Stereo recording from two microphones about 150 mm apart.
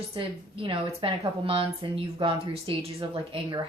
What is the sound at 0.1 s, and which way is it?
A woman's voice, 35° right (ahead or behind).